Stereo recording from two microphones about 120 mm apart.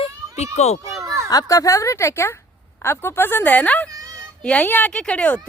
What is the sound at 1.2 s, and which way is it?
A woman's voice, 30° left (ahead or behind).